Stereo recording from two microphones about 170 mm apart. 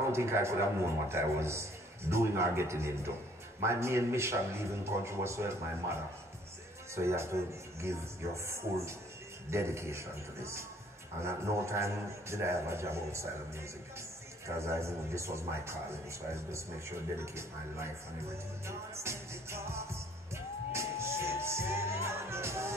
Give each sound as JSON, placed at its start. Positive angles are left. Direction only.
{"t": 0.1, "sound": "a man's voice", "side_deg": -15}
{"t": 7.0, "sound": "a man's voice", "side_deg": -15}
{"t": 8.5, "sound": "a man's voice", "side_deg": -15}